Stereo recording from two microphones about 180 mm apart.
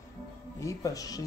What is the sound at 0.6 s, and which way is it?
Speech, 20° left (ahead or behind).